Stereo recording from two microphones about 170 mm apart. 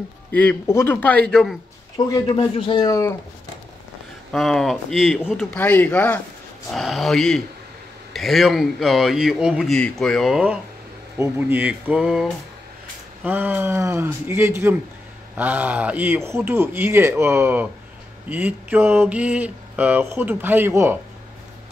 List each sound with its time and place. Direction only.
0.3 s a man's voice: 10° left (ahead or behind)
2.0 s speech: 20° left (ahead or behind)
2.3 s speech: 30° left (ahead or behind)
4.3 s a man's voice: centre (ahead or behind)
11.1 s a sound: 10° right (ahead or behind)